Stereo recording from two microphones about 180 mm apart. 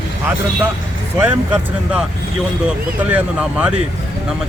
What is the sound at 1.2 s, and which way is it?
Speech, 10° right (ahead or behind).